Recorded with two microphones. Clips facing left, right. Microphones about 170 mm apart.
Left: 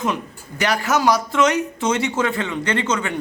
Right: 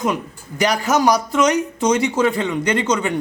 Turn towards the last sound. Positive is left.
turn(degrees=-15)  # may be behind; listen again after turning